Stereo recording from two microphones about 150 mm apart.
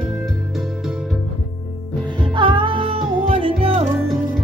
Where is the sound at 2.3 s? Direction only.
35° right (ahead or behind).